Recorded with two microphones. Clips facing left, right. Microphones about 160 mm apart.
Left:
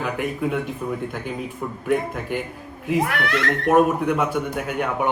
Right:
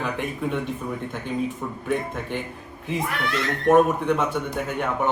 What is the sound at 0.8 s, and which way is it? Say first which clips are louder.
Speech: left 3 dB; 5° left (ahead or behind).